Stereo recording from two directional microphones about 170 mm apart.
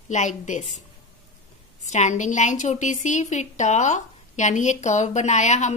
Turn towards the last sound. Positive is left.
turn(degrees=45)  # may be behind; listen again after turning